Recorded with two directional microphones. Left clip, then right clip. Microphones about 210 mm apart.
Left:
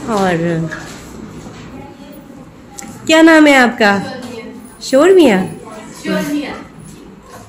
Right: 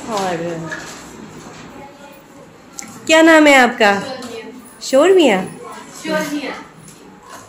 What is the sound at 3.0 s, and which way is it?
A woman's voice, 5° left (ahead or behind).